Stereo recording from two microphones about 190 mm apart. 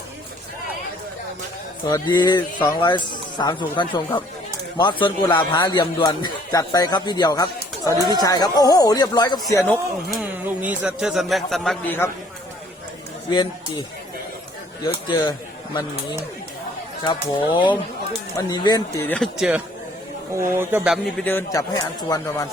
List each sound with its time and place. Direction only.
1.9 s a man's voice: 20° left (ahead or behind)
10.1 s a man's voice: 5° right (ahead or behind); by 12.1 s 10° left (ahead or behind)
13.3 s a man's voice: 25° left (ahead or behind)
14.8 s speech: 25° left (ahead or behind)
17.0 s a man's voice: 20° left (ahead or behind)
19.0 s a man's voice: 5° left (ahead or behind)
21.2 s speech: 10° left (ahead or behind)